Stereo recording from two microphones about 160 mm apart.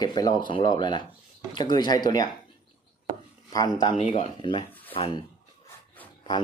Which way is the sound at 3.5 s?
25° left (ahead or behind).